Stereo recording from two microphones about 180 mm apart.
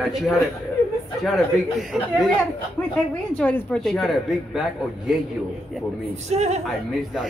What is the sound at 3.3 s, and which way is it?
Speech, 5° left (ahead or behind).